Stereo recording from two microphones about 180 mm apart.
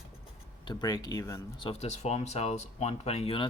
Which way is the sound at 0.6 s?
20° left (ahead or behind).